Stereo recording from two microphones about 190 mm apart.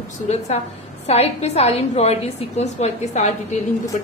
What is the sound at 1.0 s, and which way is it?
A woman's voice, 35° left (ahead or behind).